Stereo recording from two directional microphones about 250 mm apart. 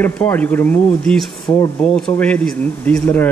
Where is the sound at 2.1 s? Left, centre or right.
Centre.